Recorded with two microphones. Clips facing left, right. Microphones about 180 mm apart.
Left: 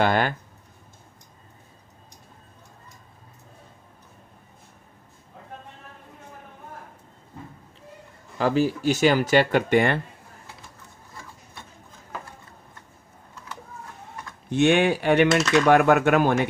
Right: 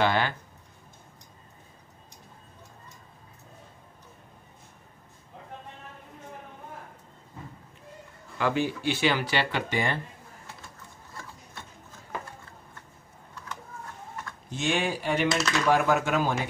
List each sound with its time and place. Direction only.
0.0 s a sound: 50° left (ahead or behind)
8.4 s speech: 35° left (ahead or behind); by 9.9 s 60° left (ahead or behind)
14.5 s speech: 60° left (ahead or behind)